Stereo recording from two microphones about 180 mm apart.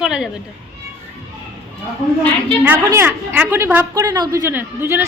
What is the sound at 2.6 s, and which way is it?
A woman's voice, 10° right (ahead or behind).